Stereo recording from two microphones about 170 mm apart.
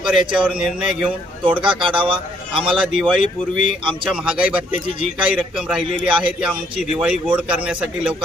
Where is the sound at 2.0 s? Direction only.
30° right (ahead or behind).